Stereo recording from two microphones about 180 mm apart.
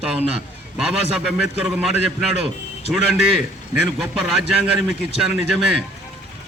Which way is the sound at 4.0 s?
Centre (ahead or behind).